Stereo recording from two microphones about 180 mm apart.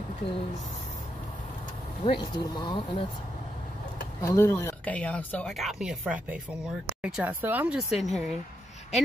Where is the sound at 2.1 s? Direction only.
25° left (ahead or behind).